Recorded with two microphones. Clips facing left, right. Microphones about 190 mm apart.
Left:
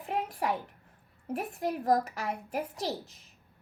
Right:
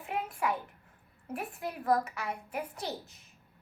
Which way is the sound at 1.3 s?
35° left (ahead or behind).